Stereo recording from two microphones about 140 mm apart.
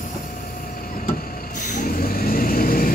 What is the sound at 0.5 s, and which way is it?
Vehicle, 90° left.